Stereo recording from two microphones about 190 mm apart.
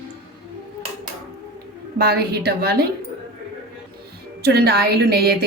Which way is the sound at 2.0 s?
55° right (ahead or behind).